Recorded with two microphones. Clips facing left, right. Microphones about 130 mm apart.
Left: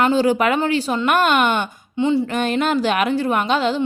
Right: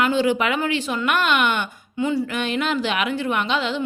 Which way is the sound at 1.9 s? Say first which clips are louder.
Left 4 dB; 25° left (ahead or behind).